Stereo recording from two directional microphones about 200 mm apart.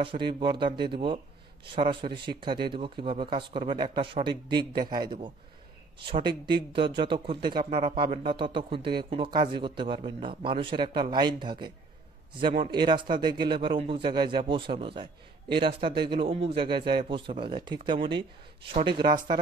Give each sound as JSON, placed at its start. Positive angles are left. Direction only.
{"t": 0.0, "sound": "a man's voice", "side_deg": -25}